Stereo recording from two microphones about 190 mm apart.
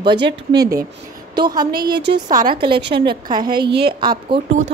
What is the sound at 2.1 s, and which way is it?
Speech, 20° right (ahead or behind).